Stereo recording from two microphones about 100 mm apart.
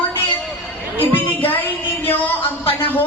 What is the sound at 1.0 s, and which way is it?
Music, 20° left (ahead or behind).